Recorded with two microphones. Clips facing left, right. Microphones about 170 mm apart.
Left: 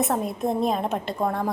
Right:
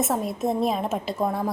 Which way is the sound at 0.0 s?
Centre (ahead or behind).